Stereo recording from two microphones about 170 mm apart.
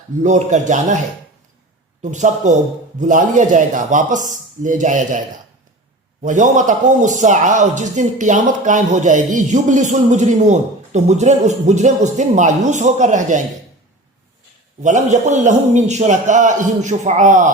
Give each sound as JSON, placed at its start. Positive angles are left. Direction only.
{"t": 0.2, "sound": "a man's voice", "side_deg": -45}
{"t": 2.0, "sound": "a man's voice", "side_deg": -45}
{"t": 6.2, "sound": "a man's voice", "side_deg": -45}
{"t": 14.8, "sound": "a man's voice", "side_deg": -45}